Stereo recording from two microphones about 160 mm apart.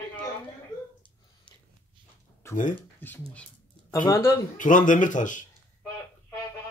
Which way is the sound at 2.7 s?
10° left (ahead or behind).